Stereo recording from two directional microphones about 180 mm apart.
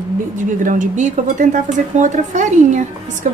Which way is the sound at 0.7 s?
45° right (ahead or behind).